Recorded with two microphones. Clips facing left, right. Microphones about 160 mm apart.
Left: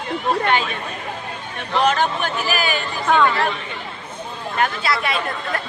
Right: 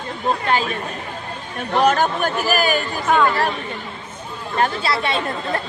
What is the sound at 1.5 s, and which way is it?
Speech, 45° right (ahead or behind).